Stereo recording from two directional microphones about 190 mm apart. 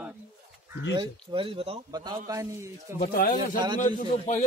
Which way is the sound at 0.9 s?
25° right (ahead or behind).